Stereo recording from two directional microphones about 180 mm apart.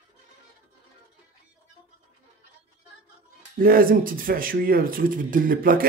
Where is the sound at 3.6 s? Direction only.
55° right (ahead or behind).